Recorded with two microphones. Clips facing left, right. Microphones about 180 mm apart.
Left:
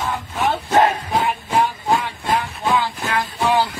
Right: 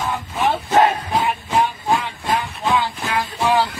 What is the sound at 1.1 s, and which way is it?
Music, 5° left (ahead or behind).